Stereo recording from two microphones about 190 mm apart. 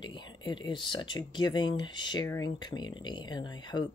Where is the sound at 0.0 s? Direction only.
25° left (ahead or behind).